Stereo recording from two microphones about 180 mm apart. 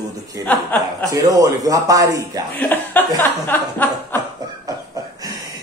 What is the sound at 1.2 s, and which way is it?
Speech, 20° right (ahead or behind).